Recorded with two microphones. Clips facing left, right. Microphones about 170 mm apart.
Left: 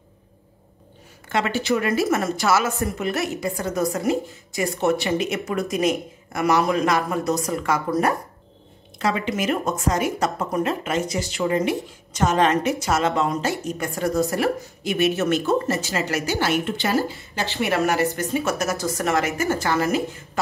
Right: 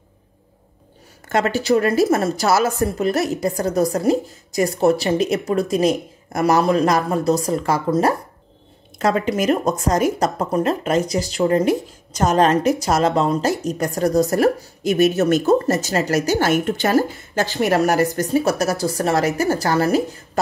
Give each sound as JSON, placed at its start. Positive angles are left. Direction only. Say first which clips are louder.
{"t": 1.3, "sound": "speech", "louder": "right 5 dB", "side_deg": -40}
{"t": 8.9, "sound": "speech", "louder": "right 5 dB", "side_deg": -45}